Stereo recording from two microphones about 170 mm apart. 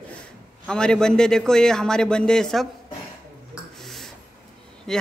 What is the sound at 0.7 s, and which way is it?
Speech, 5° left (ahead or behind).